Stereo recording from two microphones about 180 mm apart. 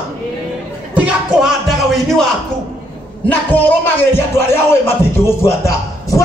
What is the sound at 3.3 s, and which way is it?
Speech, 10° left (ahead or behind).